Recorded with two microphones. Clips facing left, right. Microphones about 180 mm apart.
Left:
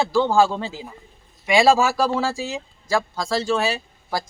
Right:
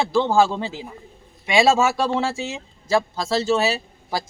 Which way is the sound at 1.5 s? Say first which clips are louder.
Left 1 dB; 20° right (ahead or behind).